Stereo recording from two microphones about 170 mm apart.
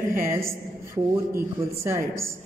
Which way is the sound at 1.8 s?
15° right (ahead or behind).